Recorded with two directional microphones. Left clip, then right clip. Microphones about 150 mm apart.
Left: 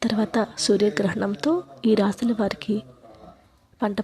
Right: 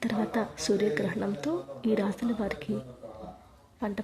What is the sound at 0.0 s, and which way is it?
A woman's voice, 30° left (ahead or behind).